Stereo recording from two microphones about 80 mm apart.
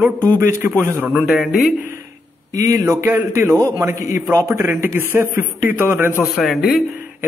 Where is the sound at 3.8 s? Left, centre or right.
Right.